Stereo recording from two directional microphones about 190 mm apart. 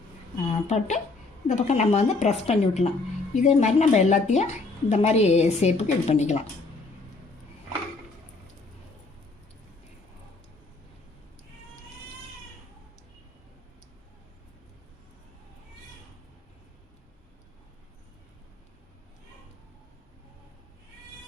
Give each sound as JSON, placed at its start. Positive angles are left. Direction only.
{"t": 0.4, "sound": "a woman's voice", "side_deg": 35}